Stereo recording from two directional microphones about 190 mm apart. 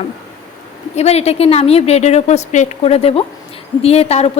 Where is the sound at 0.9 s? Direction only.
35° left (ahead or behind).